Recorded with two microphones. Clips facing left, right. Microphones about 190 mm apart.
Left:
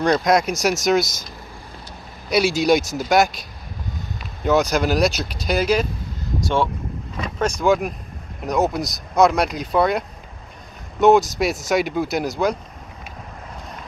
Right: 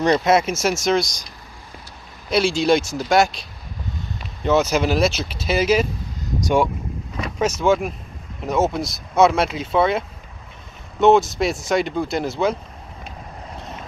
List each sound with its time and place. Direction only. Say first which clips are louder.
0.0 s speech: right 1 dB; 5° right (ahead or behind)
2.2 s speech: even; 5° left (ahead or behind)
6.4 s speech: right 3 dB; 15° right (ahead or behind)
7.3 s speech: even; 5° right (ahead or behind)